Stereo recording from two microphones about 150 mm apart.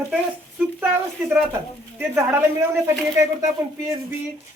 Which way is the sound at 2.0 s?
20° right (ahead or behind).